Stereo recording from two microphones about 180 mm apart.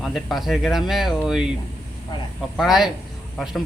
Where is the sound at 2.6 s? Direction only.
Centre (ahead or behind).